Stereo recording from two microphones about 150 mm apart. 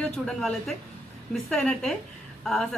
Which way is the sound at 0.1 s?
5° left (ahead or behind).